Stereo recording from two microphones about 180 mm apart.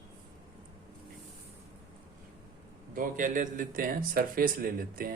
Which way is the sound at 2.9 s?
50° right (ahead or behind).